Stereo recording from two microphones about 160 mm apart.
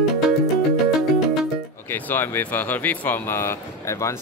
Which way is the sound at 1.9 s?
15° left (ahead or behind).